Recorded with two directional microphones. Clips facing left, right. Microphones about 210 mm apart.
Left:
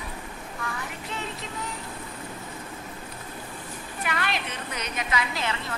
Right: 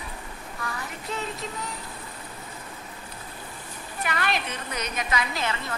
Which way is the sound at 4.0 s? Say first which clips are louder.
Right 2 dB; 40° right (ahead or behind).